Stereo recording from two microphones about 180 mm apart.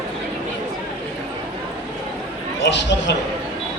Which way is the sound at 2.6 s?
75° left (ahead or behind).